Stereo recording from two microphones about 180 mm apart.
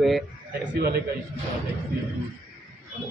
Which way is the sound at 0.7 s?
60° right (ahead or behind).